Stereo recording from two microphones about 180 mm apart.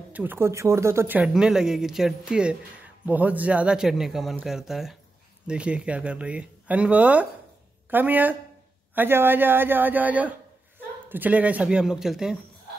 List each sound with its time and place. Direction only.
0.1 s speech: 10° right (ahead or behind)